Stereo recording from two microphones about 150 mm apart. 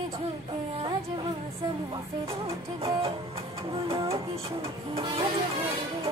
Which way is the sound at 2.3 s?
40° right (ahead or behind).